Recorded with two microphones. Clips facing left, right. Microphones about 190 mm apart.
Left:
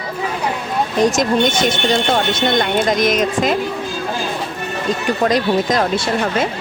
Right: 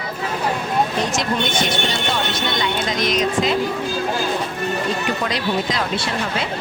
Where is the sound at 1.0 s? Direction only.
45° left (ahead or behind).